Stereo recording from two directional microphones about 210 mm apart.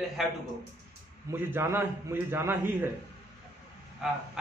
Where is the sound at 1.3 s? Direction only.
10° right (ahead or behind).